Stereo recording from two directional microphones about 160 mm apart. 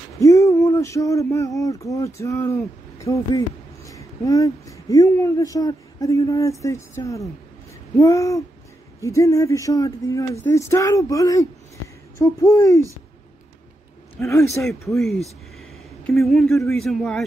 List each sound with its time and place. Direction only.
0.2 s speech: 20° left (ahead or behind)
14.1 s a man's voice: 20° left (ahead or behind)
14.5 s speech: centre (ahead or behind)